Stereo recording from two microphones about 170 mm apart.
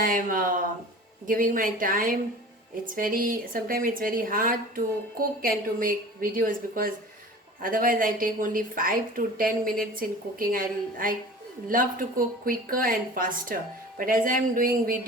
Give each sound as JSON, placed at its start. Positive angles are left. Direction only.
{"t": 0.0, "sound": "a woman's voice", "side_deg": -55}